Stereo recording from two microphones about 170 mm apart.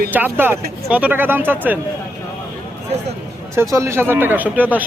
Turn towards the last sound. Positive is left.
turn(degrees=-10)  # may be behind; listen again after turning